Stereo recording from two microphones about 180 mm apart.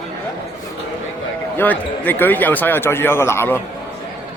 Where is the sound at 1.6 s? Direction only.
10° left (ahead or behind).